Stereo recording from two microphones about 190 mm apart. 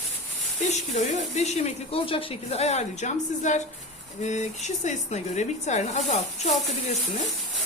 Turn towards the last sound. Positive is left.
turn(degrees=35)  # may be behind; listen again after turning